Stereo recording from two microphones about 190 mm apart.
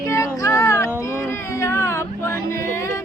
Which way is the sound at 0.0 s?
15° left (ahead or behind).